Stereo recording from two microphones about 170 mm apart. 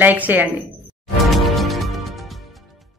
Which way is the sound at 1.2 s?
Centre (ahead or behind).